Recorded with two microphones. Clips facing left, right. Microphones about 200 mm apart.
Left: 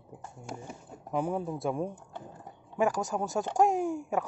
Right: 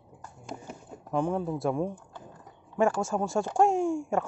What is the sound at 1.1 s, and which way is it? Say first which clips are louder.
Speech: right 3 dB; 5° left (ahead or behind).